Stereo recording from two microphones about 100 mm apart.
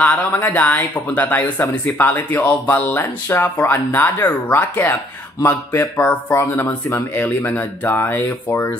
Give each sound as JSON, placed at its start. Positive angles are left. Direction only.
{"t": 0.0, "sound": "speech", "side_deg": 15}